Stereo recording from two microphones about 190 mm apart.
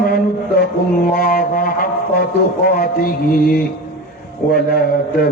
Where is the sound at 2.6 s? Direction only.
50° left (ahead or behind).